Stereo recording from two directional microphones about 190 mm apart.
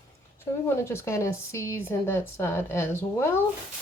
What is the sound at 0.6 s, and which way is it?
A woman's voice, 15° left (ahead or behind).